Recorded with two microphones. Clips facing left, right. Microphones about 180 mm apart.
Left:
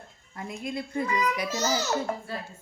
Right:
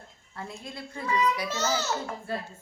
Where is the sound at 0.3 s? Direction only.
15° left (ahead or behind).